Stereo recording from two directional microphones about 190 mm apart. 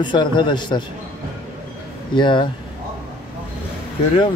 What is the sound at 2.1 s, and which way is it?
Speech, 25° left (ahead or behind).